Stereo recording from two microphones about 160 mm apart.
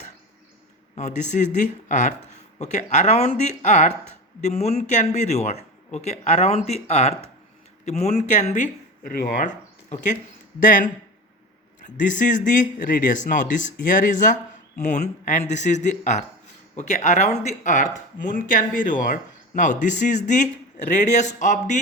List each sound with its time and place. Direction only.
0.9 s speech: 45° left (ahead or behind)
9.1 s speech: 90° left
9.4 s speech: 50° left (ahead or behind)
11.9 s speech: 55° left (ahead or behind)